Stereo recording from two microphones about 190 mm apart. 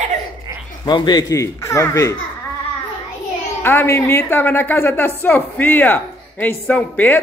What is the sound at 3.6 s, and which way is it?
A woman's voice, 10° left (ahead or behind).